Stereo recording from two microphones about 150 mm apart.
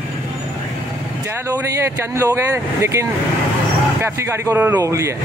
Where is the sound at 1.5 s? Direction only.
20° right (ahead or behind).